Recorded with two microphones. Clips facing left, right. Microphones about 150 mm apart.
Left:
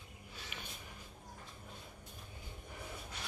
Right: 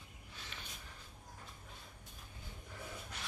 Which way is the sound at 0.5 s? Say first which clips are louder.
Left 3 dB; 15° left (ahead or behind).